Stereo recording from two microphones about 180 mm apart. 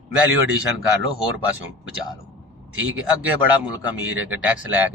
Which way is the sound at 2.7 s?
90° right.